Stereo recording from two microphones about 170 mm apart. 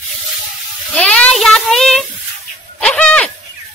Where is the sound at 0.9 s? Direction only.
5° left (ahead or behind).